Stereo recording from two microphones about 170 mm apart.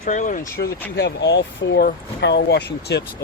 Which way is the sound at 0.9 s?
90° left.